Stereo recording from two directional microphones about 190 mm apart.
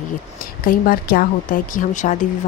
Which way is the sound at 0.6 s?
50° left (ahead or behind).